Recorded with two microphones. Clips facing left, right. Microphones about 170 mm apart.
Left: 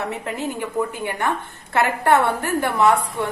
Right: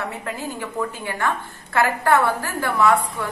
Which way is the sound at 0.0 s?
20° left (ahead or behind).